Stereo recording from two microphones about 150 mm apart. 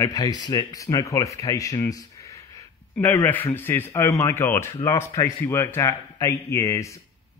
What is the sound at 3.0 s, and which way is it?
A man's voice, 15° left (ahead or behind).